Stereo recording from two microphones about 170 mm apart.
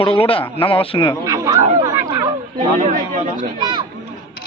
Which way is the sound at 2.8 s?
50° right (ahead or behind).